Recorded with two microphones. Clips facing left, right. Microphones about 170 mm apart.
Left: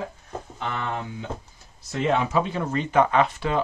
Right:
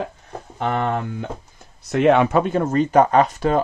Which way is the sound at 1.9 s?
65° right (ahead or behind).